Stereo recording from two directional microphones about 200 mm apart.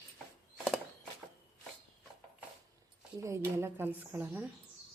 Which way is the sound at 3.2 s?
15° right (ahead or behind).